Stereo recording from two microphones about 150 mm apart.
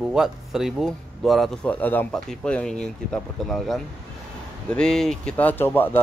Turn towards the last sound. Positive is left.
turn(degrees=15)  # may be behind; listen again after turning